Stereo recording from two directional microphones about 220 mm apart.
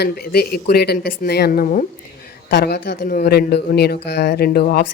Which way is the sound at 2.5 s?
50° left (ahead or behind).